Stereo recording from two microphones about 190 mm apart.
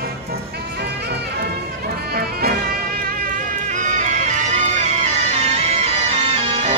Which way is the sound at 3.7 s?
40° right (ahead or behind).